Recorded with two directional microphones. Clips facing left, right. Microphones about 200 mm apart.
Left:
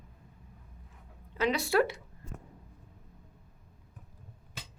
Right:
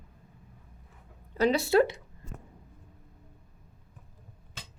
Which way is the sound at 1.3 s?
35° right (ahead or behind).